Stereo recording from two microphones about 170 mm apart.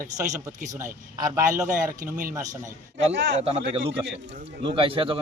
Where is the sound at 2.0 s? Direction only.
55° right (ahead or behind).